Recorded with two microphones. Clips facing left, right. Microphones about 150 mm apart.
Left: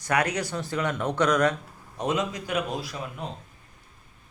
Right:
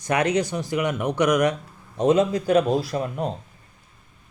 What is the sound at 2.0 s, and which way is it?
A man's voice, 30° right (ahead or behind).